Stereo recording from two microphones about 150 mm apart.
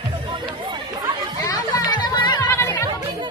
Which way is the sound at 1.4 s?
25° left (ahead or behind).